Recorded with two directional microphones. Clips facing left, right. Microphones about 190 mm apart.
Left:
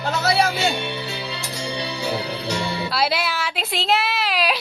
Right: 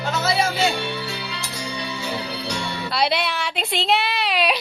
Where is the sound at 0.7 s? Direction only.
20° left (ahead or behind).